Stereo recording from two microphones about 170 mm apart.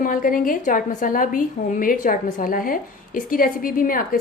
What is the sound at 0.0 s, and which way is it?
A woman's voice, 55° left (ahead or behind).